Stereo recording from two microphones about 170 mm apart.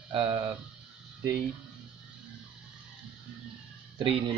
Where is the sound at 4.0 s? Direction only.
25° right (ahead or behind).